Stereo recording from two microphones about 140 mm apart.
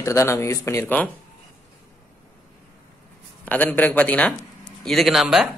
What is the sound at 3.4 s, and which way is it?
Speech, 10° left (ahead or behind).